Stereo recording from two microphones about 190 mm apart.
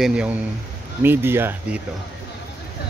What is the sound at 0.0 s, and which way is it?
A man's voice, 5° right (ahead or behind).